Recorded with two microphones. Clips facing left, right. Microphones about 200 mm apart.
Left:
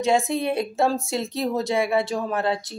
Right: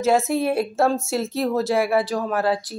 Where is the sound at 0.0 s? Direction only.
Centre (ahead or behind).